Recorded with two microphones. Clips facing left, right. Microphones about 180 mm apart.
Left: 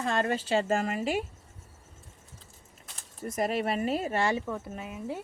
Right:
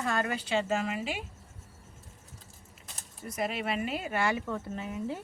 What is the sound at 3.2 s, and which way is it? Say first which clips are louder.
Speech: left 4 dB; 40° left (ahead or behind).